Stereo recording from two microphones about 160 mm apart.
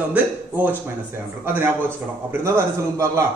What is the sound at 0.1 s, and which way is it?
A man's voice, 10° right (ahead or behind).